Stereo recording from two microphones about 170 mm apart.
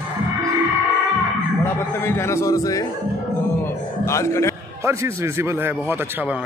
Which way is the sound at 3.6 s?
15° left (ahead or behind).